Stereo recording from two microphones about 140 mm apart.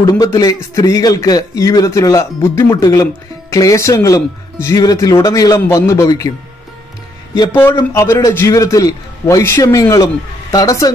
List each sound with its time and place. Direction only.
0.0 s a man's voice: 25° left (ahead or behind)
7.9 s a man's voice: 20° left (ahead or behind)